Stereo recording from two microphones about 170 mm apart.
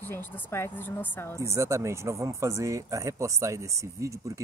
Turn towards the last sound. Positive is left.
turn(degrees=-20)  # may be behind; listen again after turning